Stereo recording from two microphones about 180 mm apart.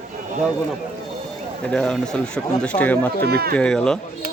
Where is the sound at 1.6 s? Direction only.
5° left (ahead or behind).